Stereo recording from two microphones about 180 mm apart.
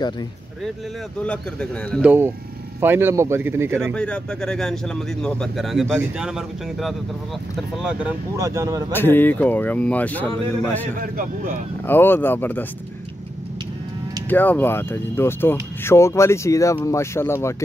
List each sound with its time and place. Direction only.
1.2 s speech: 5° left (ahead or behind)
2.0 s speech: 10° right (ahead or behind)
3.9 s speech: 5° left (ahead or behind)
8.4 s speech: 20° right (ahead or behind)
8.9 s speech: 10° left (ahead or behind)
11.0 s a man's voice: 50° right (ahead or behind)
11.8 s speech: 10° left (ahead or behind)
14.3 s speech: 10° left (ahead or behind)